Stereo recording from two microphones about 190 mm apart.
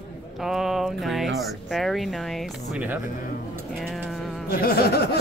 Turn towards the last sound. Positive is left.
turn(degrees=55)  # may be behind; listen again after turning